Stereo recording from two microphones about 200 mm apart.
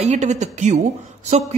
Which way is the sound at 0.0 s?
35° right (ahead or behind).